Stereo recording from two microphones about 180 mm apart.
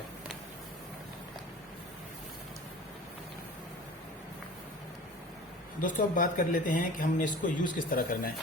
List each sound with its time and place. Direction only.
5.8 s speech: 45° left (ahead or behind)